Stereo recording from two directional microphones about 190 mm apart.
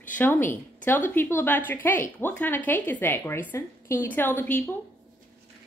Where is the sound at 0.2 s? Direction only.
10° left (ahead or behind).